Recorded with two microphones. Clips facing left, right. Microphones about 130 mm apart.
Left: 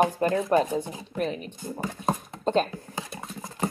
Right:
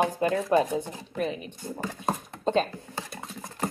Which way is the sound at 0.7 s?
15° left (ahead or behind).